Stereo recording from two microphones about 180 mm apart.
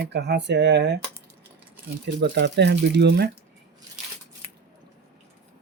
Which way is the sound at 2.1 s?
70° right (ahead or behind).